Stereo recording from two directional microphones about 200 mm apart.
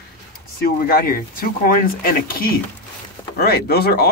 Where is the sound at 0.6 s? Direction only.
45° left (ahead or behind).